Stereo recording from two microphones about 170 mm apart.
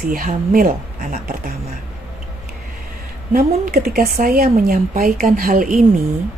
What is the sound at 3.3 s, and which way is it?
Speech, 60° right (ahead or behind).